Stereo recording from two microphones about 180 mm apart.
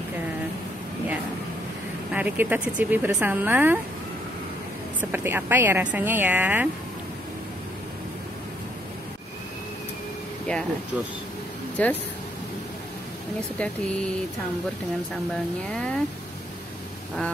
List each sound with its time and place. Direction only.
2.1 s speech: 10° right (ahead or behind)
5.1 s speech: 10° right (ahead or behind)
10.5 s speech: 5° left (ahead or behind)
11.7 s speech: 10° left (ahead or behind)
15.7 s speech: 5° left (ahead or behind)